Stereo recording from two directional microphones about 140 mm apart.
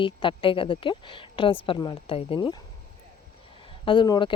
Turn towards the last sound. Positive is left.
turn(degrees=35)  # may be behind; listen again after turning